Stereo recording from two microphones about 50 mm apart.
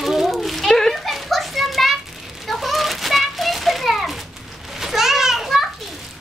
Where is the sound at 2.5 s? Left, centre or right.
Centre.